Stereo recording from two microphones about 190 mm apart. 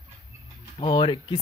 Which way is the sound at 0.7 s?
25° left (ahead or behind).